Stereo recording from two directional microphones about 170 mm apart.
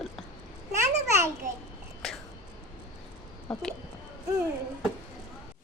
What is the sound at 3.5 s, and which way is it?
Speech, 5° left (ahead or behind).